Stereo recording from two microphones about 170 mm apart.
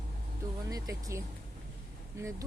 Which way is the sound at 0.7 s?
20° right (ahead or behind).